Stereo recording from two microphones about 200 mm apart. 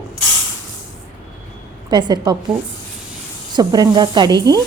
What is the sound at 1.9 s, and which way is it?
Speech, 20° right (ahead or behind).